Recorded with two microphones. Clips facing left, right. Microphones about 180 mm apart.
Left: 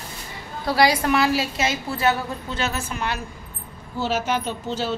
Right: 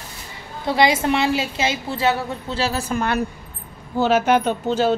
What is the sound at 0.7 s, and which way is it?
A woman's voice, 25° right (ahead or behind).